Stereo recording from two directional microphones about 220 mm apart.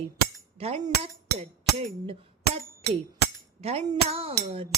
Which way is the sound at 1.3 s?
25° right (ahead or behind).